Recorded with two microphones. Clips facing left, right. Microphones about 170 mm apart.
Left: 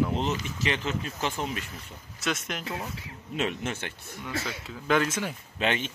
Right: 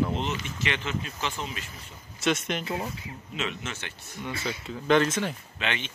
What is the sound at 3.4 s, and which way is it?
Speech, 50° left (ahead or behind).